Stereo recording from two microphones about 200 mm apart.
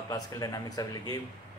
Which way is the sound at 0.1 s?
20° left (ahead or behind).